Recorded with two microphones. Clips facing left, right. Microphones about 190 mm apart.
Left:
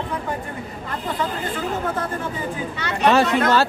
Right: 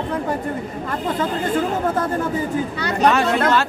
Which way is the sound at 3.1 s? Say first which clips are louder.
Left 2 dB; 35° left (ahead or behind).